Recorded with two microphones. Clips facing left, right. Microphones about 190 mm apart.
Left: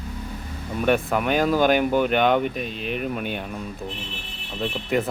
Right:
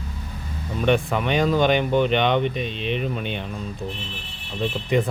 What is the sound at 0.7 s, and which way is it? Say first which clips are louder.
A man's voice: even; 5° left (ahead or behind).